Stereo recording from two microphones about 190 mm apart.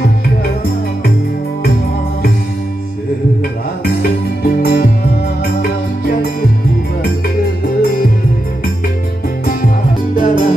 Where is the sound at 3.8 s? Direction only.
50° left (ahead or behind).